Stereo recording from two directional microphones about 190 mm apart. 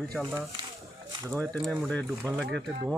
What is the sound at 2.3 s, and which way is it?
Speech, 20° right (ahead or behind).